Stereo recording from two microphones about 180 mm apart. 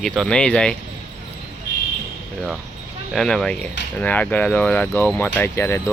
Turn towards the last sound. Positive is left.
turn(degrees=15)  # may be behind; listen again after turning